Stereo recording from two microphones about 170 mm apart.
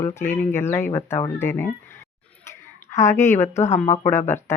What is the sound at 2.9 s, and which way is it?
Speech, 15° left (ahead or behind).